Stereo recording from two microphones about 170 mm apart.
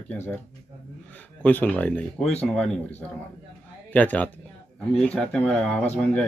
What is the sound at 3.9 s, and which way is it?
Speech, 10° left (ahead or behind).